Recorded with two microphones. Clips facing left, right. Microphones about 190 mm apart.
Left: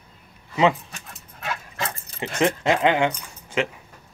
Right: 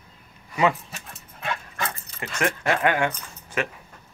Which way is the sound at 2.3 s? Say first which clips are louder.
Left 4 dB; 20° left (ahead or behind).